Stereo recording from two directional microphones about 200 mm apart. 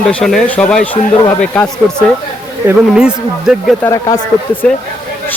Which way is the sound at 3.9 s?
15° left (ahead or behind).